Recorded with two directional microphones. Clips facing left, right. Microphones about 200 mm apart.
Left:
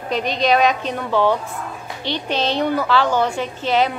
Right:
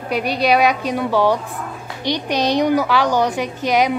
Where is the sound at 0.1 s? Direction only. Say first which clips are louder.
Right 1 dB; 10° right (ahead or behind).